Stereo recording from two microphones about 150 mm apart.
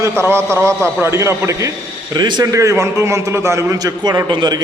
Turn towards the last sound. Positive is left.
turn(degrees=-30)  # may be behind; listen again after turning